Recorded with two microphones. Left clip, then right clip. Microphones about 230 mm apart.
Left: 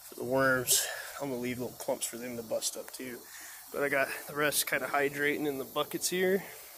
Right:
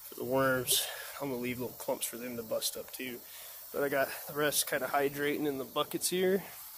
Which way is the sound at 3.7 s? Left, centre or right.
Centre.